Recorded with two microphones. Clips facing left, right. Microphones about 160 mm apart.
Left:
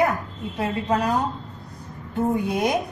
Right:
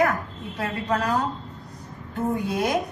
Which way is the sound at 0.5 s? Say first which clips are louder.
Left 3 dB; 20° left (ahead or behind).